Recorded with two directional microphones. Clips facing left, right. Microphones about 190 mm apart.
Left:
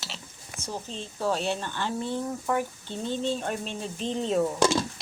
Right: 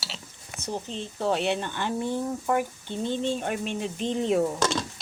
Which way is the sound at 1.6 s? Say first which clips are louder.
Right 2 dB; 15° right (ahead or behind).